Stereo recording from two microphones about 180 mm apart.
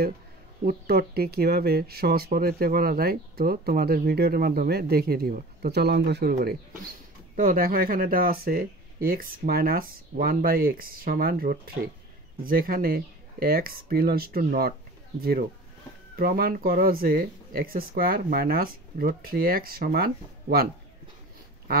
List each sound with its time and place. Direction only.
0.7 s speech: 60° right (ahead or behind)
7.3 s speech: 50° right (ahead or behind)